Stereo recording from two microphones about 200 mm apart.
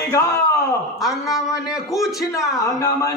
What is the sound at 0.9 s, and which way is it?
A man's voice, centre (ahead or behind).